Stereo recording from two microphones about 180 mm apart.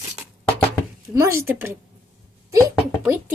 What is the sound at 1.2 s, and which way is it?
Speech, 15° right (ahead or behind).